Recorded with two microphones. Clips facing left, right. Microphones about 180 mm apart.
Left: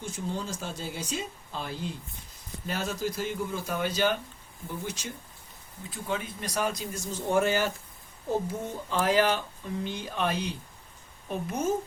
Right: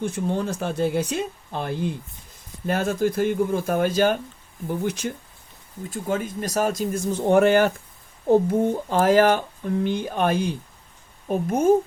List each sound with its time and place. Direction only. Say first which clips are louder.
0.0 s speech: right 9 dB; 60° right (ahead or behind)
5.9 s speech: right 7 dB; 45° right (ahead or behind)